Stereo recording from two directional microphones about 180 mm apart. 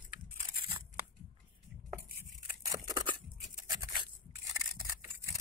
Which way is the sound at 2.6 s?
20° right (ahead or behind).